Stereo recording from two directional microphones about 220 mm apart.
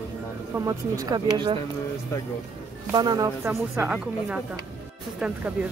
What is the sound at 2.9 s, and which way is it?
Speech, 20° right (ahead or behind).